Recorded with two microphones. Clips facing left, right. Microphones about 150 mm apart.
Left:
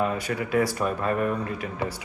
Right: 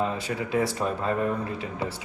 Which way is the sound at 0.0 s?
25° right (ahead or behind).